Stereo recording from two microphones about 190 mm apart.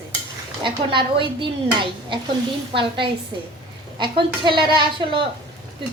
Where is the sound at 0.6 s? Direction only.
25° right (ahead or behind).